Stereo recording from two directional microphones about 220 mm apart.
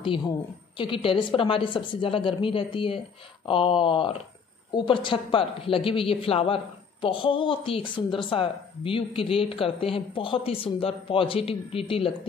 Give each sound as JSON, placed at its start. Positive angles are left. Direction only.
{"t": 0.7, "sound": "speech", "side_deg": 25}